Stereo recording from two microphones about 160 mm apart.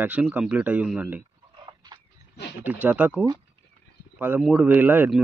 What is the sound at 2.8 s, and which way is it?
A man's voice, 10° right (ahead or behind).